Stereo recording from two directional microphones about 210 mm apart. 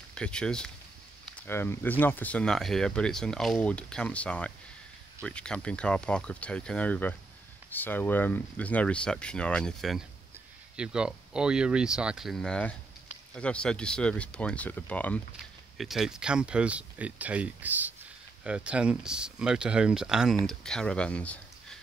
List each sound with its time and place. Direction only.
0.1 s speech: 5° left (ahead or behind)